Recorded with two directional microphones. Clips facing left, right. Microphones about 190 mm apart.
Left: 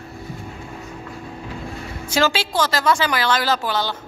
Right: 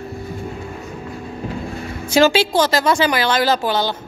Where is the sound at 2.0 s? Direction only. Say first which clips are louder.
Right 6 dB; 15° right (ahead or behind).